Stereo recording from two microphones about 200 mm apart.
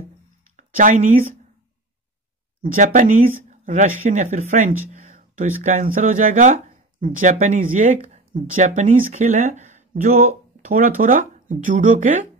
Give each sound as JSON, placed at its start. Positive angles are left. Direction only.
{"t": 0.6, "sound": "speech", "side_deg": -40}
{"t": 2.6, "sound": "speech", "side_deg": -40}